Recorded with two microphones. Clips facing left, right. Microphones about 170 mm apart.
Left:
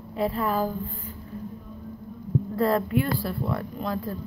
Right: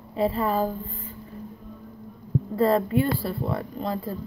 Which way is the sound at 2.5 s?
Centre (ahead or behind).